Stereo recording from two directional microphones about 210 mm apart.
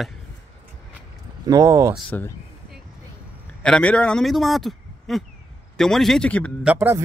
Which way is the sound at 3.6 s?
5° left (ahead or behind).